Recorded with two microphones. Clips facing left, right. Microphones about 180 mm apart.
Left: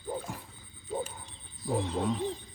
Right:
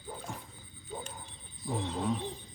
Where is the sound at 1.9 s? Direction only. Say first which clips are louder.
Right 1 dB; centre (ahead or behind).